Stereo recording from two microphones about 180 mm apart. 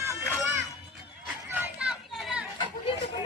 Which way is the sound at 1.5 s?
10° right (ahead or behind).